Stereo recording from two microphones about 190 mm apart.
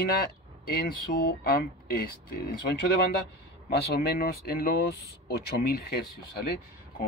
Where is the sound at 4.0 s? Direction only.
50° left (ahead or behind).